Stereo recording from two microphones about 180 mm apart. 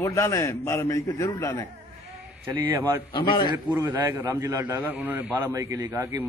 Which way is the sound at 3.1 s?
25° left (ahead or behind).